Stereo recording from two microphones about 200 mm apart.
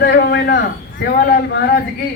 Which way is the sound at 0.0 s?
55° left (ahead or behind).